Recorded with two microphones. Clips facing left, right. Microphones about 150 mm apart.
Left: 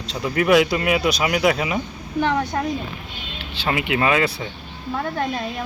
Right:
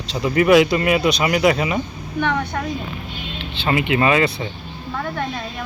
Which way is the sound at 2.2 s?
30° left (ahead or behind).